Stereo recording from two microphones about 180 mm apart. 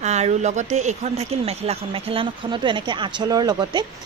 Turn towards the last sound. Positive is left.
turn(degrees=-25)  # may be behind; listen again after turning